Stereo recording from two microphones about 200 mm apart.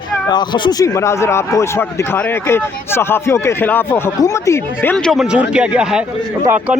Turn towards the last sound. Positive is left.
turn(degrees=-5)  # may be behind; listen again after turning